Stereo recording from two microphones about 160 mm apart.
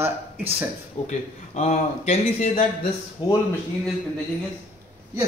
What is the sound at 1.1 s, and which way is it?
A man's voice, 45° left (ahead or behind).